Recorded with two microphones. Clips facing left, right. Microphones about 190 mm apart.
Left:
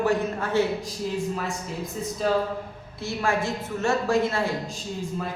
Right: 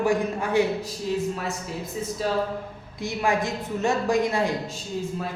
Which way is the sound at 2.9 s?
15° right (ahead or behind).